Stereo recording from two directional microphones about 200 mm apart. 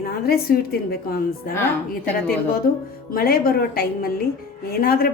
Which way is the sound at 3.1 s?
45° left (ahead or behind).